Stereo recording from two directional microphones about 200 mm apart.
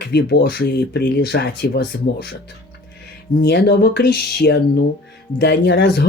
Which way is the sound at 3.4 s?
55° left (ahead or behind).